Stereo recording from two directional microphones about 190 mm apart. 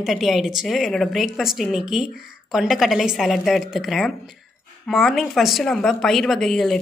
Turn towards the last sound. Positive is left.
turn(degrees=0)  # may be behind; listen again after turning